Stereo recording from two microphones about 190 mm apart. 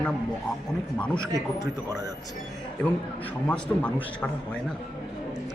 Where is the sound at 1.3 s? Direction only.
20° right (ahead or behind).